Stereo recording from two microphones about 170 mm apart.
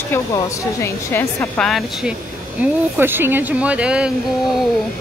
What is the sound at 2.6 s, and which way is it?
Speech, 10° right (ahead or behind).